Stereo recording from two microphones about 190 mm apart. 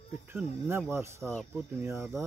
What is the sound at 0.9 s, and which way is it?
Speech, 15° right (ahead or behind).